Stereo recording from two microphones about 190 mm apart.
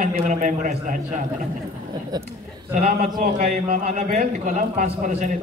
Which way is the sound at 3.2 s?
50° right (ahead or behind).